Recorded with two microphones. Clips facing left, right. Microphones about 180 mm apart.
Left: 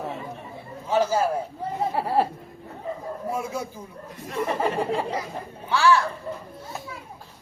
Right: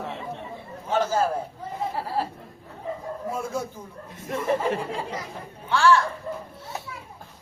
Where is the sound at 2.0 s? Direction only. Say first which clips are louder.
Left 7 dB; 65° left (ahead or behind).